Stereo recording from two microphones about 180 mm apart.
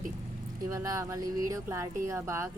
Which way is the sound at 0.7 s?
20° right (ahead or behind).